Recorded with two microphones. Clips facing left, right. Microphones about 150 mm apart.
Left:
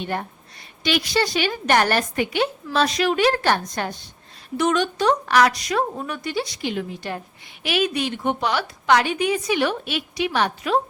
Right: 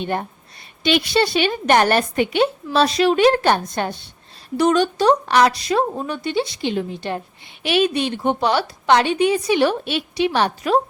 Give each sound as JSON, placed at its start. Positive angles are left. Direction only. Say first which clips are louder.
{"t": 0.0, "sound": "a woman's voice", "louder": "right 3 dB", "side_deg": -20}